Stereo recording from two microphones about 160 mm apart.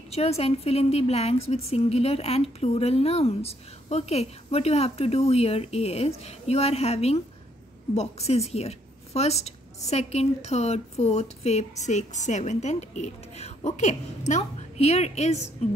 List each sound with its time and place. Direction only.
0.1 s a woman's voice: 40° left (ahead or behind)